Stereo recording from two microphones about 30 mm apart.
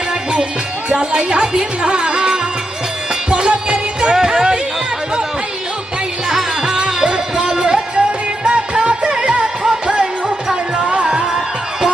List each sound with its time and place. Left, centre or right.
0.9 s music: right
4.1 s music: centre
6.2 s music: right